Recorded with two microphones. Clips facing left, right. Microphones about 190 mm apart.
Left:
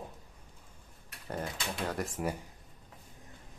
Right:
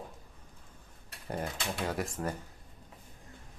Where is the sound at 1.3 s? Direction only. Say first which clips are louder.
Right 1 dB; 10° right (ahead or behind).